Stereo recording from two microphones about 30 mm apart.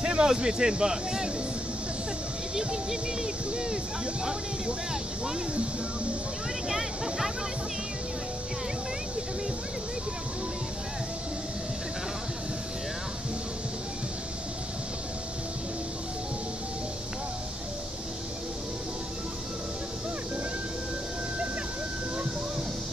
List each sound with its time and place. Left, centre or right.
0.0 s a sound: right
0.3 s speech: right
2.5 s speech: right
6.7 s speech: centre